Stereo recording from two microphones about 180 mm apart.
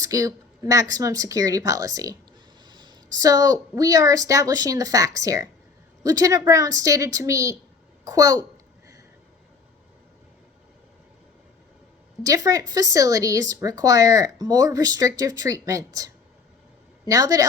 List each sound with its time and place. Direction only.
0.0 s speech: 20° right (ahead or behind)
12.2 s speech: 20° right (ahead or behind)